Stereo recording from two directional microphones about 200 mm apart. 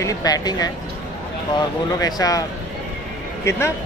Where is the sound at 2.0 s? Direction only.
15° left (ahead or behind).